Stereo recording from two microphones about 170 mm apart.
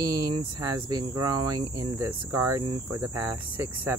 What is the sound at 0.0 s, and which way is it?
Speech, 20° right (ahead or behind).